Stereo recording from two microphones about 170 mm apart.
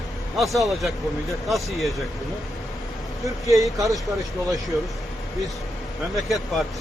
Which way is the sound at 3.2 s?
20° right (ahead or behind).